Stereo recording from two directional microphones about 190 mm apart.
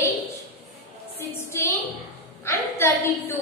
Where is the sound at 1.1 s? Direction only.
15° left (ahead or behind).